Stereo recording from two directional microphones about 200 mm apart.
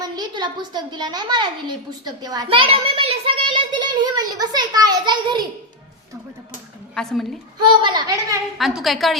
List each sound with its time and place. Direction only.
0.0 s a child's voice: 20° right (ahead or behind)
6.9 s a woman's voice: 5° left (ahead or behind)
7.6 s a child's voice: 25° right (ahead or behind)
8.5 s a woman's voice: centre (ahead or behind)